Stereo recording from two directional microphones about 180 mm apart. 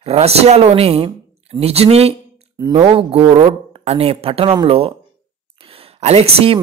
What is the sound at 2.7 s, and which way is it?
A woman's voice, 35° right (ahead or behind).